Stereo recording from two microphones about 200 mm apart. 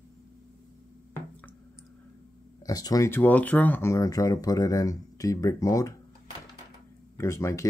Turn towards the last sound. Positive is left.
turn(degrees=15)  # may be behind; listen again after turning